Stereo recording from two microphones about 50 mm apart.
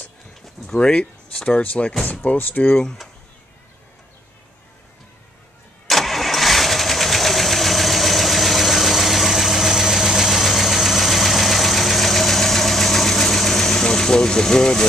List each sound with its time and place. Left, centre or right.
0.7 s speech: centre
1.6 s speech: left
5.9 s vehicle: centre